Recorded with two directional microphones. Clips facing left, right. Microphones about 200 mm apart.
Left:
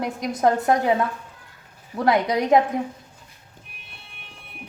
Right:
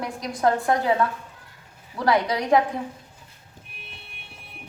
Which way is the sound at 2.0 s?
25° left (ahead or behind).